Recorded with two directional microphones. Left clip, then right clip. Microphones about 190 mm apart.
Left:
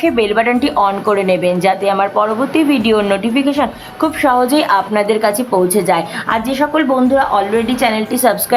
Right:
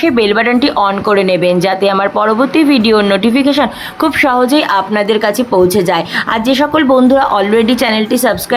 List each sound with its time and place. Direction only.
0.0 s speech: 15° right (ahead or behind)